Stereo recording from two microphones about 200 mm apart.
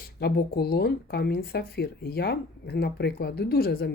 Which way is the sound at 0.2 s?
50° left (ahead or behind).